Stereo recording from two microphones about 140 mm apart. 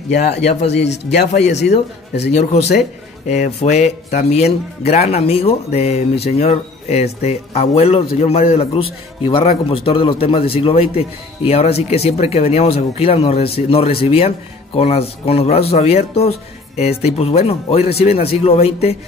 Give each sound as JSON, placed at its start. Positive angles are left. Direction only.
{"t": 0.3, "sound": "speech", "side_deg": 50}
{"t": 3.3, "sound": "speech", "side_deg": 55}